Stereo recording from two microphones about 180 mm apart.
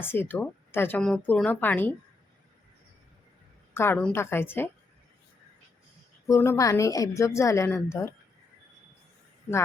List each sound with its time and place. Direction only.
0.0 s speech: 10° left (ahead or behind)
3.8 s speech: 10° left (ahead or behind)
6.2 s speech: 15° left (ahead or behind)